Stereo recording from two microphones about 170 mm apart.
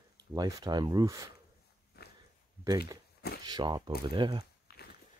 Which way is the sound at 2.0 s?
65° left (ahead or behind).